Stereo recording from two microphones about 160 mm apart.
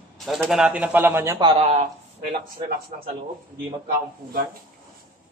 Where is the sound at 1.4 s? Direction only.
30° right (ahead or behind).